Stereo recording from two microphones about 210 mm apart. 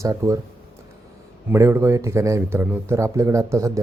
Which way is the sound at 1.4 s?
10° right (ahead or behind).